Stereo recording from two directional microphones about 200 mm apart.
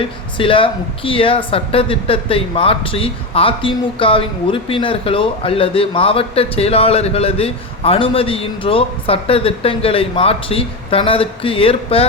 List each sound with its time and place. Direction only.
0.0 s speech: 25° left (ahead or behind)